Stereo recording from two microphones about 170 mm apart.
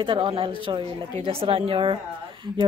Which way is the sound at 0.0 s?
30° right (ahead or behind).